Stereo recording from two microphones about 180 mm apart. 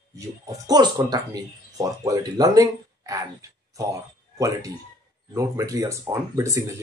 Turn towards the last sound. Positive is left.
turn(degrees=-15)  # may be behind; listen again after turning